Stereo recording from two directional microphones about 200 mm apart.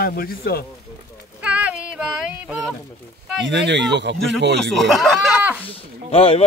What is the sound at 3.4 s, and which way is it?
Speech, 60° right (ahead or behind).